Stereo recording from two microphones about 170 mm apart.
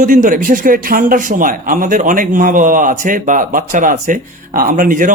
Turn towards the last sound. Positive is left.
turn(degrees=-55)  # may be behind; listen again after turning